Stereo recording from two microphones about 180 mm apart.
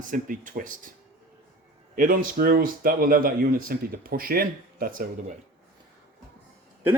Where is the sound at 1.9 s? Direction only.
50° right (ahead or behind).